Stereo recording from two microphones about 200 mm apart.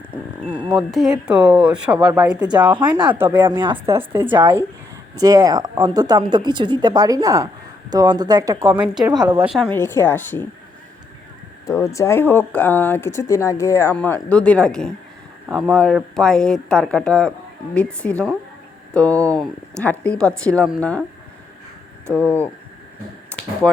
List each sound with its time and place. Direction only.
0.7 s a woman's voice: centre (ahead or behind)
3.4 s speech: 25° right (ahead or behind)
9.0 s speech: 20° right (ahead or behind)
9.5 s speech: 5° left (ahead or behind)
11.6 s a woman's voice: 15° left (ahead or behind)
22.0 s speech: 10° right (ahead or behind)